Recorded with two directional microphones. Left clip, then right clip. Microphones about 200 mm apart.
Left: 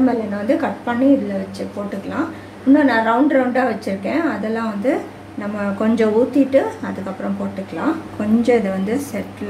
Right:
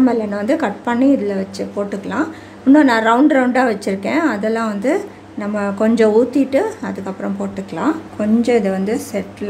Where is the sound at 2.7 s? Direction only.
40° right (ahead or behind).